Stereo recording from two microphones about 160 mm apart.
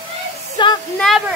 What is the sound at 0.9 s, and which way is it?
Speech, centre (ahead or behind).